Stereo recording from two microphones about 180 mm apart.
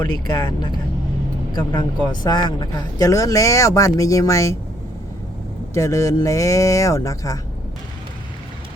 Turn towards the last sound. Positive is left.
turn(degrees=20)  # may be behind; listen again after turning